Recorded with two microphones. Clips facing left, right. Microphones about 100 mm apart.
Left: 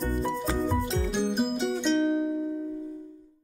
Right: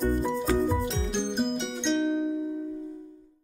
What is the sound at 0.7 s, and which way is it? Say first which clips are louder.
Music: left 1 dB; 5° left (ahead or behind).